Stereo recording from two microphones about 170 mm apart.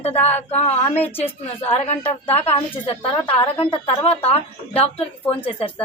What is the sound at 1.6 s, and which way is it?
A woman's voice, 35° left (ahead or behind).